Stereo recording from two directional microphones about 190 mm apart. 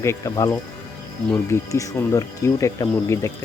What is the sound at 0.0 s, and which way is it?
Speech, 15° left (ahead or behind).